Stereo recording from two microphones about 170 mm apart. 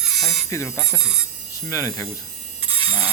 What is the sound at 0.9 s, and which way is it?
Speech, 5° right (ahead or behind).